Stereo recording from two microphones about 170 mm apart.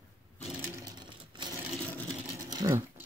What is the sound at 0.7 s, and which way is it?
Sewing machine, 25° right (ahead or behind).